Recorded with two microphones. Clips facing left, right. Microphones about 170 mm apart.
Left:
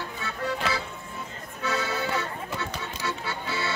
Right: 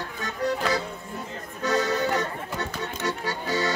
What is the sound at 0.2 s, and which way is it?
Music, 40° right (ahead or behind).